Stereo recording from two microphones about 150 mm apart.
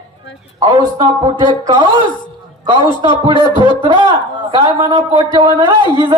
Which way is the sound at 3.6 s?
30° right (ahead or behind).